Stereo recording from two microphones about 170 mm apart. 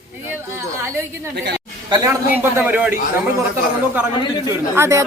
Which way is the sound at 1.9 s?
20° right (ahead or behind).